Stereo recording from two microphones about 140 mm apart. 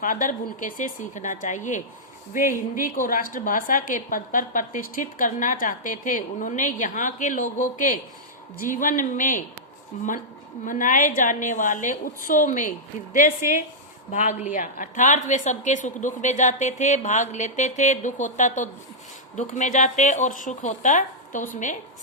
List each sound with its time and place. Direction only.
0.0 s a woman's voice: 70° left (ahead or behind)
2.3 s a woman's voice: 75° left (ahead or behind)
9.9 s a woman's voice: 60° left (ahead or behind)
10.7 s a woman's voice: 70° left (ahead or behind)